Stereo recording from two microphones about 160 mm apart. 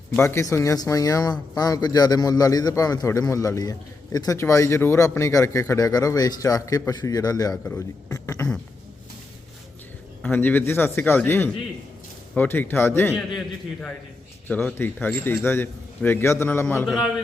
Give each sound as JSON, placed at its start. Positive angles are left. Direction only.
{"t": 0.2, "sound": "a man's voice", "side_deg": 15}
{"t": 10.2, "sound": "a man's voice", "side_deg": 10}
{"t": 14.4, "sound": "a man's voice", "side_deg": 10}
{"t": 16.8, "sound": "a man's voice", "side_deg": 0}